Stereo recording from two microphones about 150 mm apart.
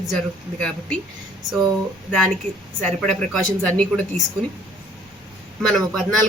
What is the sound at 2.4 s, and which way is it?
Speech, 45° right (ahead or behind).